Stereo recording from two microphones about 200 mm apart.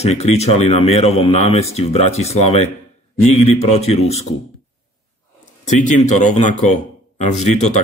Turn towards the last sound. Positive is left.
turn(degrees=35)  # may be behind; listen again after turning